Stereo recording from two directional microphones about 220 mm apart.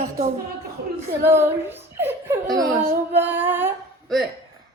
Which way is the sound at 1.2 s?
10° right (ahead or behind).